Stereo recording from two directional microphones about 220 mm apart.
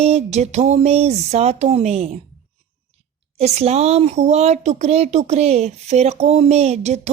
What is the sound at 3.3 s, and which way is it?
Speech, 30° right (ahead or behind).